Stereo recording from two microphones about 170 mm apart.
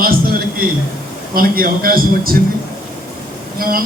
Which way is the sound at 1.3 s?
60° right (ahead or behind).